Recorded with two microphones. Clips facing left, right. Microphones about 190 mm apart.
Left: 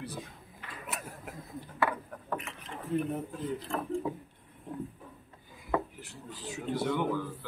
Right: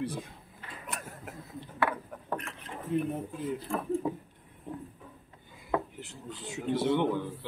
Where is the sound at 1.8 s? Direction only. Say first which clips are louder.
Even; centre (ahead or behind).